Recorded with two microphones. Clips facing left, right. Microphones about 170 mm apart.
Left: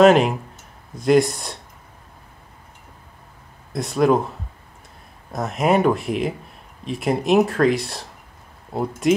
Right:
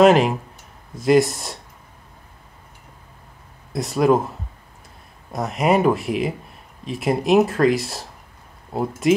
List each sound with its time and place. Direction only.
0.0 s speech: centre (ahead or behind)
3.7 s speech: centre (ahead or behind)
5.3 s speech: centre (ahead or behind)